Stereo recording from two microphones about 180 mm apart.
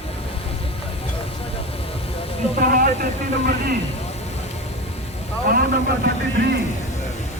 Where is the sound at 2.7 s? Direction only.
50° right (ahead or behind).